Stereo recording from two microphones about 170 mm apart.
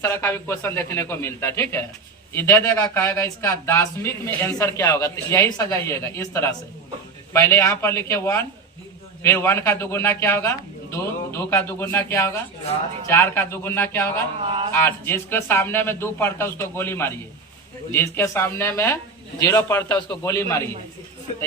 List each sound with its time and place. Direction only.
0.0 s speech: 15° left (ahead or behind)
14.4 s speech: 35° right (ahead or behind)
14.7 s speech: 15° left (ahead or behind)